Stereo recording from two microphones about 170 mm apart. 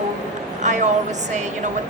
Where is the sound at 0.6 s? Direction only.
45° right (ahead or behind).